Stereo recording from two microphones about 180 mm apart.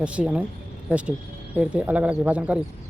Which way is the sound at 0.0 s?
5° right (ahead or behind).